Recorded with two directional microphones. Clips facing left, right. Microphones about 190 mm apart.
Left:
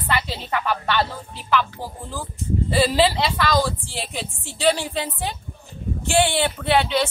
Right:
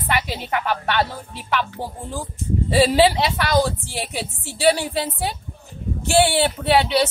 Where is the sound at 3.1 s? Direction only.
20° right (ahead or behind).